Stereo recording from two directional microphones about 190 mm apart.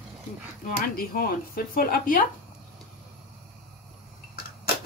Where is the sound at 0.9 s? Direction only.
50° left (ahead or behind).